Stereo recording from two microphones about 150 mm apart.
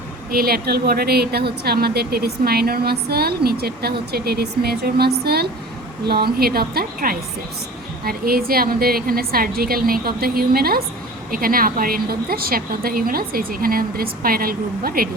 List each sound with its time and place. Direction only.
0.3 s a woman's voice: 85° right
11.3 s a woman's voice: 75° right (ahead or behind)